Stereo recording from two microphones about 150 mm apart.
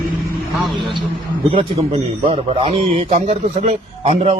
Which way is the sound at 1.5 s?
45° right (ahead or behind).